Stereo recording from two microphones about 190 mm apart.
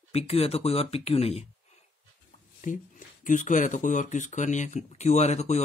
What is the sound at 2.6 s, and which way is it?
Speech, 40° left (ahead or behind).